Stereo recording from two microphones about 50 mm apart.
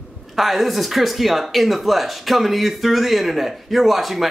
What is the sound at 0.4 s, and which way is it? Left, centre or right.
A man's voice, centre.